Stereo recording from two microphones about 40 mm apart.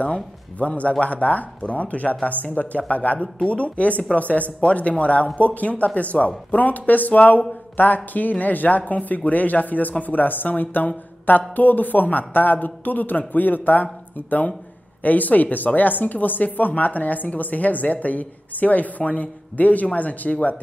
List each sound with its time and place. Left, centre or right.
0.0 s speech: left
15.0 s speech: left